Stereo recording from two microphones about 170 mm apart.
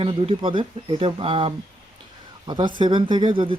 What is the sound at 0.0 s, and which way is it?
Speech, 30° right (ahead or behind).